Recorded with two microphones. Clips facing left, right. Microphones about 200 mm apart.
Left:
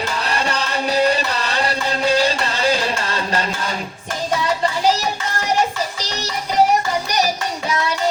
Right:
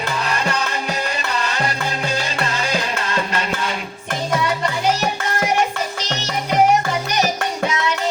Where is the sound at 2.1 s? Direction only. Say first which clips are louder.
Left 5 dB; 35° left (ahead or behind).